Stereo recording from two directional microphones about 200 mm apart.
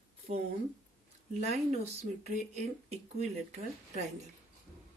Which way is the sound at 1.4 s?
30° right (ahead or behind).